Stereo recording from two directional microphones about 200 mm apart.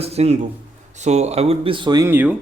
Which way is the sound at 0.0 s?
30° right (ahead or behind).